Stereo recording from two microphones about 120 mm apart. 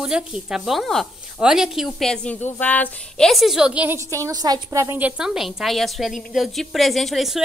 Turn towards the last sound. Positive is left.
turn(degrees=0)  # may be behind; listen again after turning